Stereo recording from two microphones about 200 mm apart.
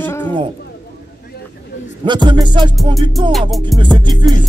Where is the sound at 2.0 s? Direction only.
25° right (ahead or behind).